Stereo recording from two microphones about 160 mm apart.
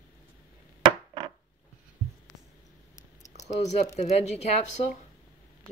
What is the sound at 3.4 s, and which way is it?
Speech, 45° left (ahead or behind).